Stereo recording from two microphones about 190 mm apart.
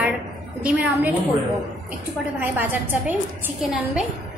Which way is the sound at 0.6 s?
5° right (ahead or behind).